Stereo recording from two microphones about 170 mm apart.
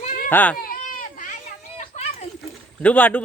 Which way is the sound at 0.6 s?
55° left (ahead or behind).